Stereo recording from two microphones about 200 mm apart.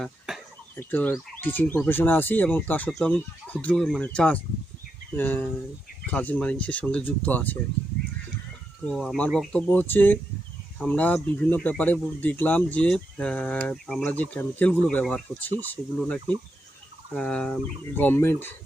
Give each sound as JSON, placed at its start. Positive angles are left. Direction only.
{"t": 0.0, "sound": "a sound", "side_deg": 0}
{"t": 0.8, "sound": "speech", "side_deg": 10}
{"t": 8.9, "sound": "speech", "side_deg": 0}